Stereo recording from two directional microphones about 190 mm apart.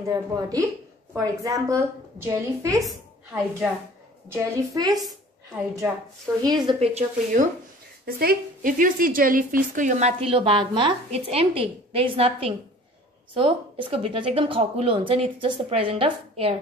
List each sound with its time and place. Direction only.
0.1 s a woman's voice: 20° right (ahead or behind)
4.3 s a woman's voice: 20° right (ahead or behind)
6.4 s a woman's voice: 25° right (ahead or behind)
8.0 s a woman's voice: 55° right (ahead or behind); by 16.5 s 30° right (ahead or behind)